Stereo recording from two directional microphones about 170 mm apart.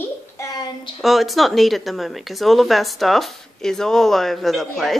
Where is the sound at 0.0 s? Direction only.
20° left (ahead or behind).